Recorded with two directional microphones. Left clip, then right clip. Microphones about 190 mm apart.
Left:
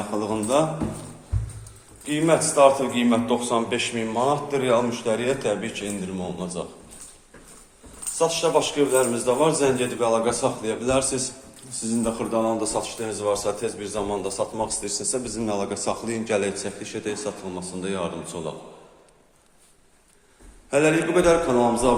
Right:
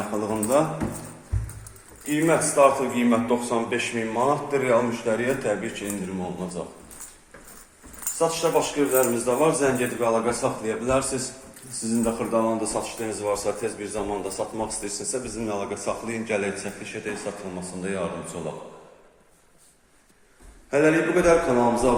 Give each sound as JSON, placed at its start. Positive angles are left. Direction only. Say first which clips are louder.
{"t": 0.2, "sound": "speech", "louder": "even", "side_deg": 5}
{"t": 2.0, "sound": "speech", "louder": "left 1 dB", "side_deg": 10}
{"t": 8.5, "sound": "speech", "louder": "left 1 dB", "side_deg": 10}
{"t": 11.8, "sound": "a man's voice", "louder": "even", "side_deg": 0}
{"t": 20.7, "sound": "a man's voice", "louder": "even", "side_deg": 10}